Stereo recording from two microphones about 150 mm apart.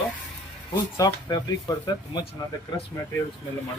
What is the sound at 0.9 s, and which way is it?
Speech, 25° left (ahead or behind).